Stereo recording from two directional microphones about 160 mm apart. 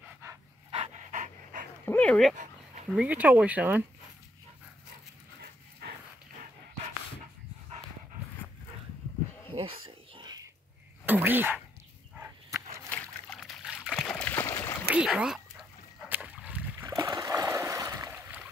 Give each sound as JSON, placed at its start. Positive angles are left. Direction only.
{"t": 0.0, "sound": "dog", "side_deg": -15}
{"t": 0.7, "sound": "pant", "side_deg": -40}
{"t": 1.9, "sound": "speech", "side_deg": 5}
{"t": 2.9, "sound": "speech", "side_deg": -10}
{"t": 9.6, "sound": "a sound", "side_deg": -30}
{"t": 11.1, "sound": "speech", "side_deg": -10}
{"t": 12.2, "sound": "dog", "side_deg": -20}
{"t": 12.9, "sound": "a sound", "side_deg": 10}
{"t": 13.4, "sound": "slosh", "side_deg": 0}
{"t": 14.5, "sound": "a sound", "side_deg": 25}
{"t": 15.0, "sound": "splash", "side_deg": -5}
{"t": 16.8, "sound": "splash", "side_deg": -20}
{"t": 18.1, "sound": "a sound", "side_deg": -5}